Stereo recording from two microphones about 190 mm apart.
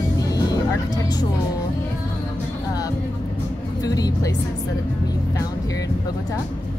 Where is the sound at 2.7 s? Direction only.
20° left (ahead or behind).